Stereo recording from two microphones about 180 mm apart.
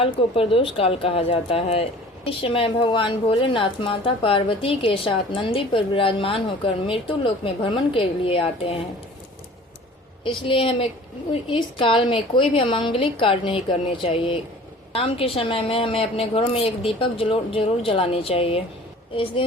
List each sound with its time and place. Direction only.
0.0 s speech: 30° left (ahead or behind)
10.2 s a woman's voice: 30° left (ahead or behind)